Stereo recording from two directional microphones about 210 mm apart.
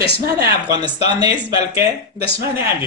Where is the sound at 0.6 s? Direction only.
20° right (ahead or behind).